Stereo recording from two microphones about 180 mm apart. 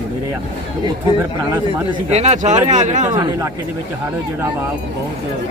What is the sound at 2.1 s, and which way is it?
Speech, 35° right (ahead or behind).